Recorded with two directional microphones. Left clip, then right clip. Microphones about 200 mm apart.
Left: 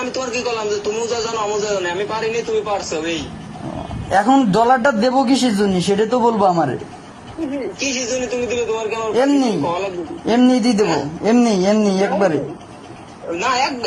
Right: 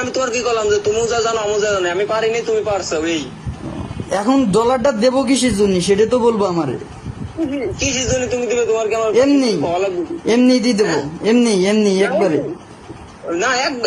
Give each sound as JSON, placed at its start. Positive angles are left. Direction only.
{"t": 0.0, "sound": "a man's voice", "side_deg": 0}
{"t": 8.0, "sound": "music", "side_deg": -50}
{"t": 8.3, "sound": "a man's voice", "side_deg": 0}